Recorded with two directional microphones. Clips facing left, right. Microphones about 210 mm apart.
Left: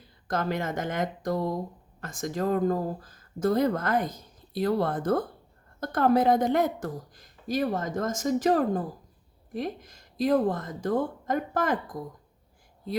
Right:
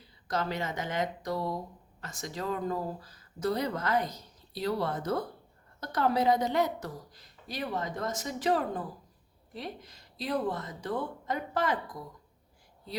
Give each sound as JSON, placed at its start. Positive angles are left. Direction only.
{"t": 0.3, "sound": "speech", "side_deg": 50}